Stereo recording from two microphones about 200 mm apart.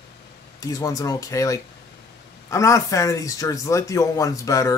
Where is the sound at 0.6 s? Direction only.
15° left (ahead or behind).